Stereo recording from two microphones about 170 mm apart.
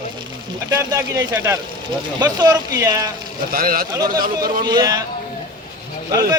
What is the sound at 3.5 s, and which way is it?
Speech, 55° right (ahead or behind).